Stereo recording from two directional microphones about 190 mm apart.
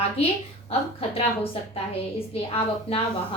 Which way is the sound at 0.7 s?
30° left (ahead or behind).